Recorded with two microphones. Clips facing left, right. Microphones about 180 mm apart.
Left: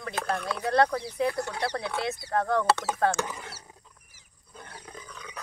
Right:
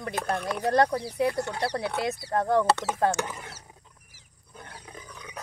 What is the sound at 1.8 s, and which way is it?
Speech, 15° right (ahead or behind).